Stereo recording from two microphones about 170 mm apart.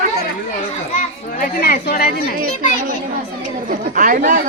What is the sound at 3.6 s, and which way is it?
Speech, 55° right (ahead or behind).